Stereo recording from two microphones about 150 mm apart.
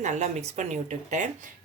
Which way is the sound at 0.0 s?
50° right (ahead or behind).